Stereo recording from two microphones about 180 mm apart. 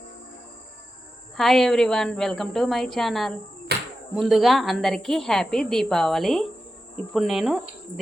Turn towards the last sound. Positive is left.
turn(degrees=0)  # may be behind; listen again after turning